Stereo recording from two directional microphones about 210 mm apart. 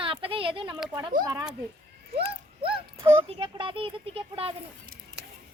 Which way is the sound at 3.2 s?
25° right (ahead or behind).